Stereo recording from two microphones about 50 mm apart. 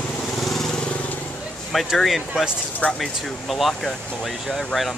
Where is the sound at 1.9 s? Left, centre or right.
Centre.